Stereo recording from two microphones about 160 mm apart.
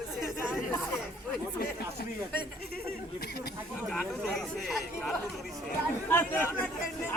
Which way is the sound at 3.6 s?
5° right (ahead or behind).